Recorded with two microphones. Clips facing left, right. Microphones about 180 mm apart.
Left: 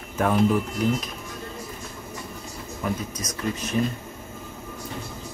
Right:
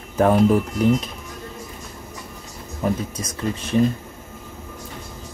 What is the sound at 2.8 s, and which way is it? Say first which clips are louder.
Speech: right 5 dB; 30° right (ahead or behind).